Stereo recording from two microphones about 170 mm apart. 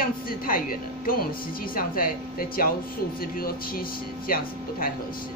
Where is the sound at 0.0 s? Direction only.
55° left (ahead or behind).